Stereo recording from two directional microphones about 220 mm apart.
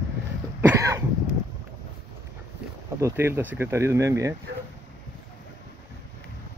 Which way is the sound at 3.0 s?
10° right (ahead or behind).